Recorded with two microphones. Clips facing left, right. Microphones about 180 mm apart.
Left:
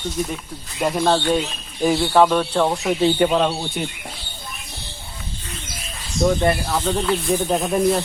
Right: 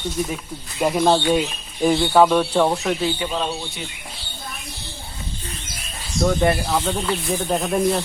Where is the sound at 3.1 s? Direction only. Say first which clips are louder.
Left 7 dB; 60° left (ahead or behind).